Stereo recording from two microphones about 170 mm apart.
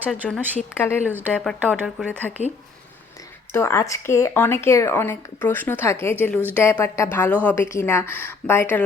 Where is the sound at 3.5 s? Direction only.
15° left (ahead or behind).